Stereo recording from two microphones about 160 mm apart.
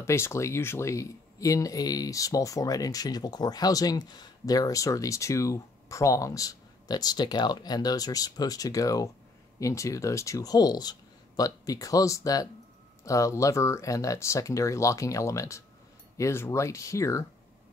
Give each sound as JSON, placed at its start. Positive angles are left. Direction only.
{"t": 0.0, "sound": "speech", "side_deg": 15}